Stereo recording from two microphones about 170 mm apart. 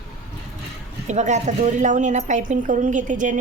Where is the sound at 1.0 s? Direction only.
45° right (ahead or behind).